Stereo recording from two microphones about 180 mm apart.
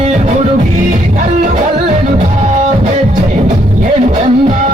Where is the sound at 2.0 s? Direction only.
40° right (ahead or behind).